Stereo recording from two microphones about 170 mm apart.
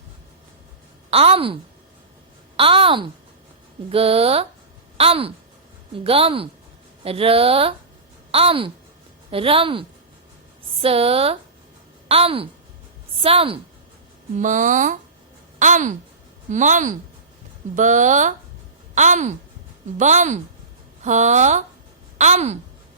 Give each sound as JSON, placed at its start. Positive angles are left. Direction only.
{"t": 1.1, "sound": "a woman's voice", "side_deg": -35}
{"t": 2.6, "sound": "a woman's voice", "side_deg": -30}
{"t": 14.3, "sound": "a woman's voice", "side_deg": -50}